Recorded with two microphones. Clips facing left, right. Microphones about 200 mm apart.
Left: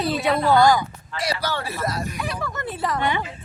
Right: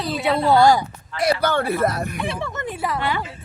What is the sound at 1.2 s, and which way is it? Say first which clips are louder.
Speech: right 7 dB; 55° right (ahead or behind).